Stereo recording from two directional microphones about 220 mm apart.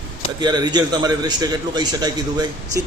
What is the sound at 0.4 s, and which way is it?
A man's voice, 20° right (ahead or behind).